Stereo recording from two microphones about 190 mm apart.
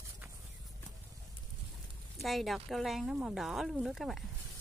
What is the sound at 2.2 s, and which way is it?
Speech, centre (ahead or behind).